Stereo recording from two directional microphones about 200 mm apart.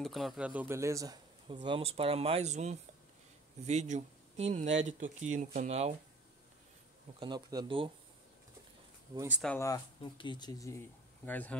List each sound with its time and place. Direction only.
0.0 s speech: centre (ahead or behind); by 5.9 s 35° right (ahead or behind)
7.2 s speech: 20° right (ahead or behind)
9.4 s speech: 5° left (ahead or behind)
9.7 s speech: 25° left (ahead or behind)